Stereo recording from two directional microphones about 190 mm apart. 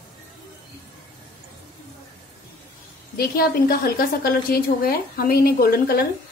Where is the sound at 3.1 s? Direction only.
50° left (ahead or behind).